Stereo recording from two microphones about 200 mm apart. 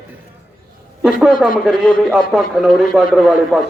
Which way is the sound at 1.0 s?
5° right (ahead or behind).